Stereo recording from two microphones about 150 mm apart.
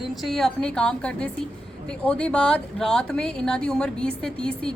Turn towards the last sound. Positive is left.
turn(degrees=5)  # may be behind; listen again after turning